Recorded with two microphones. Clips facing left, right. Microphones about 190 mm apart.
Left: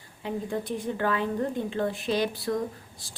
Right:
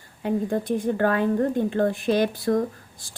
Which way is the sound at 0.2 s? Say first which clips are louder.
Right 6 dB; 50° right (ahead or behind).